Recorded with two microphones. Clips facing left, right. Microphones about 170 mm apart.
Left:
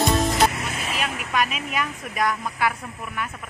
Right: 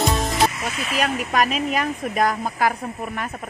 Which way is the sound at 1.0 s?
40° right (ahead or behind).